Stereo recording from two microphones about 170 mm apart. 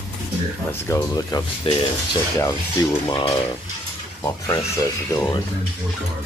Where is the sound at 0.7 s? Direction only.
15° left (ahead or behind).